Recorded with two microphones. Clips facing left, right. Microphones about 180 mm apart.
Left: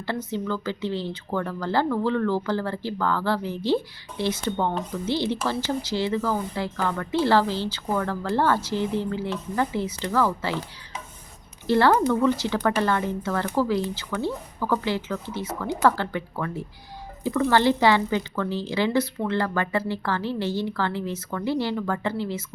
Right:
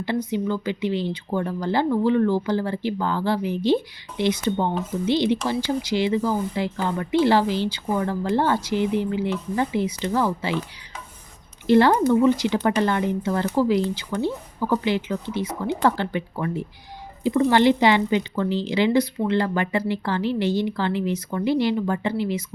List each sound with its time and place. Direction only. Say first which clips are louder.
0.0 s a woman's voice: right 4 dB; 15° right (ahead or behind)
11.6 s a woman's voice: right 3 dB; 15° right (ahead or behind)